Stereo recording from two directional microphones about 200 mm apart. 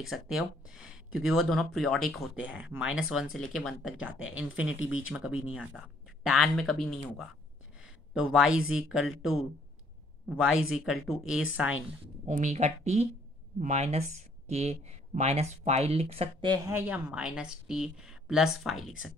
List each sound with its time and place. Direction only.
0.1 s speech: 5° right (ahead or behind)
7.8 s a sound: 5° right (ahead or behind)
8.7 s speech: 5° right (ahead or behind)
10.2 s speech: centre (ahead or behind)
12.3 s speech: 35° right (ahead or behind); by 18.9 s centre (ahead or behind)